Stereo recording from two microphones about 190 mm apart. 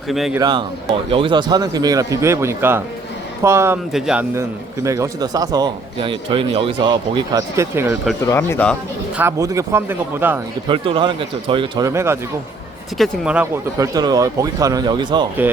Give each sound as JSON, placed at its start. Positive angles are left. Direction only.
{"t": 0.1, "sound": "speech", "side_deg": 0}
{"t": 0.3, "sound": "a man's voice", "side_deg": -20}
{"t": 3.9, "sound": "a man's voice", "side_deg": -5}
{"t": 7.3, "sound": "speech", "side_deg": -15}
{"t": 8.2, "sound": "speech", "side_deg": 15}
{"t": 9.1, "sound": "speech", "side_deg": -15}
{"t": 10.7, "sound": "a man's voice", "side_deg": -25}
{"t": 11.9, "sound": "speech", "side_deg": -15}
{"t": 13.7, "sound": "a man's voice", "side_deg": -20}